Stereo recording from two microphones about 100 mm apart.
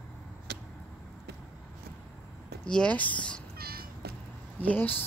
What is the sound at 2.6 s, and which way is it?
Speech, 10° left (ahead or behind).